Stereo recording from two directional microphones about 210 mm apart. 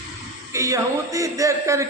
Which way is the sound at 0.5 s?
15° right (ahead or behind).